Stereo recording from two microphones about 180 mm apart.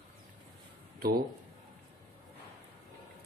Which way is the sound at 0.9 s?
55° right (ahead or behind).